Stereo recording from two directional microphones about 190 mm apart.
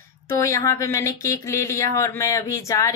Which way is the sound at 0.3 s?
15° left (ahead or behind).